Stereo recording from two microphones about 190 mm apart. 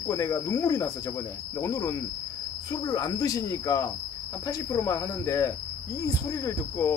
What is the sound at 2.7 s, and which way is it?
Cricket, 20° left (ahead or behind).